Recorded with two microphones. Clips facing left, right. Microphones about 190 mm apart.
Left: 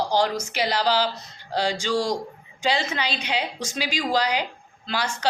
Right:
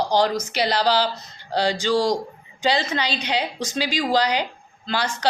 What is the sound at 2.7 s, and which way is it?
A woman's voice, 10° left (ahead or behind).